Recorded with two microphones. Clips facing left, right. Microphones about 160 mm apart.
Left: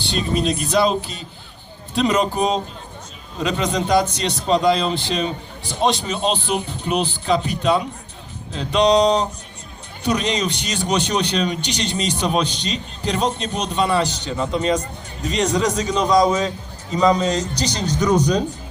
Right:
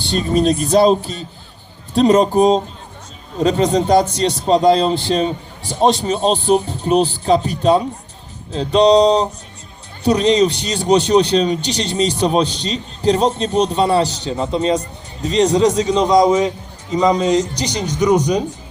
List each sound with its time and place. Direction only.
0.1 s a man's voice: 45° right (ahead or behind); by 18.4 s 15° right (ahead or behind)